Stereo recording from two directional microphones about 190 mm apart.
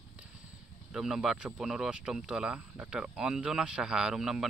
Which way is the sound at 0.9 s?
Centre (ahead or behind).